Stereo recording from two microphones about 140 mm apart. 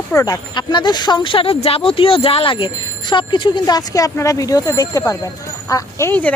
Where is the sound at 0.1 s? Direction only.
25° left (ahead or behind).